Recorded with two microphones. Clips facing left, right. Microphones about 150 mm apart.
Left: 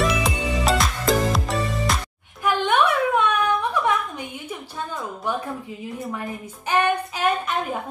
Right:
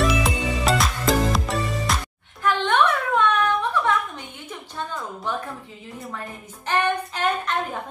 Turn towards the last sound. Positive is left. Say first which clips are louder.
# left 2 dB
turn(degrees=10)  # may be behind; listen again after turning